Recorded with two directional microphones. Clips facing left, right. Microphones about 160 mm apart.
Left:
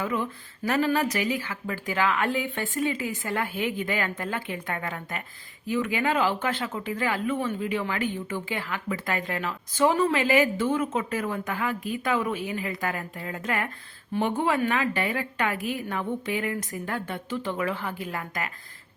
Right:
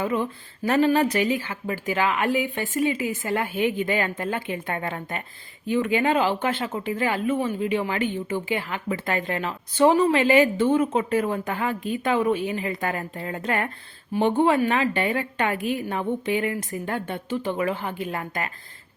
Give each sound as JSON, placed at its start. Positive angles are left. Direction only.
{"t": 0.0, "sound": "a woman's voice", "side_deg": -25}